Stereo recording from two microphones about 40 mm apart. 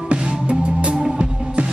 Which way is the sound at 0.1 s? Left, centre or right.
Right.